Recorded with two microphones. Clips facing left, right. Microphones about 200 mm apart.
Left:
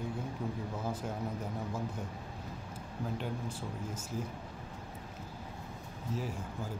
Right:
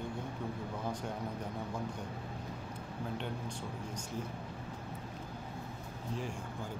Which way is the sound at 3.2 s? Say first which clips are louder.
Left 2 dB; 5° left (ahead or behind).